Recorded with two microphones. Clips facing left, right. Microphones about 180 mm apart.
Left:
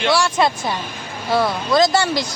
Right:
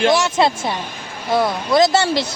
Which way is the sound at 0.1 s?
25° right (ahead or behind).